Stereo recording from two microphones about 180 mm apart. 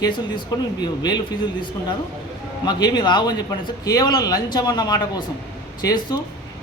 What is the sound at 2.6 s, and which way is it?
A man's voice, 20° left (ahead or behind).